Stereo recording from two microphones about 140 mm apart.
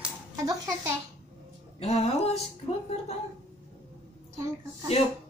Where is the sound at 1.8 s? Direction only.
50° left (ahead or behind).